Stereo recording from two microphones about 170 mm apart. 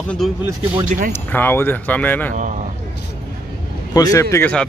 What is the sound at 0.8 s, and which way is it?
Speech, 55° right (ahead or behind).